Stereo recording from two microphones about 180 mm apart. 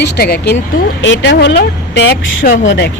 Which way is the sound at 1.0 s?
80° left.